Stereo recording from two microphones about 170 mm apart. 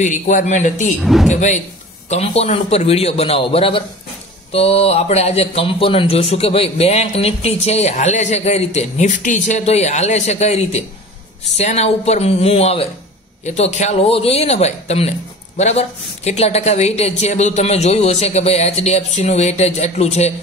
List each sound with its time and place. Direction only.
0.0 s a man's voice: 45° left (ahead or behind)
1.0 s speech: centre (ahead or behind)
1.3 s a man's voice: 45° left (ahead or behind)